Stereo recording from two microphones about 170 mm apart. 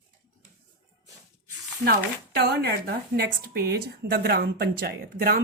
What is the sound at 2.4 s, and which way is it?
Speech, 70° right (ahead or behind).